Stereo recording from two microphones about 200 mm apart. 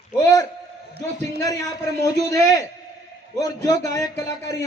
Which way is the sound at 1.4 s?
15° left (ahead or behind).